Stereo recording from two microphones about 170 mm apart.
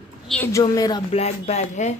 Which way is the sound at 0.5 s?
20° left (ahead or behind).